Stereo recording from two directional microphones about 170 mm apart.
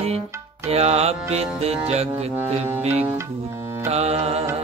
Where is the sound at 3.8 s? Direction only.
40° right (ahead or behind).